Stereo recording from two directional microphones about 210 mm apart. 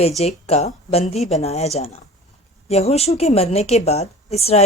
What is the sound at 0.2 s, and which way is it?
A woman's voice, 30° left (ahead or behind).